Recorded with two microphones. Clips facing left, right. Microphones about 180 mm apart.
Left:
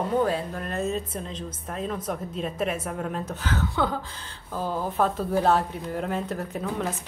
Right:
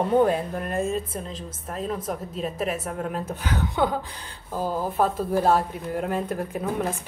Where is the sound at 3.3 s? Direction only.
15° right (ahead or behind).